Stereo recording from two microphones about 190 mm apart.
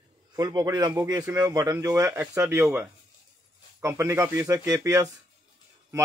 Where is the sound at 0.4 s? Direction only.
20° right (ahead or behind).